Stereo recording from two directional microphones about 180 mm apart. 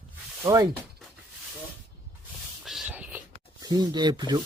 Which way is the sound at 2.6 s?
Centre (ahead or behind).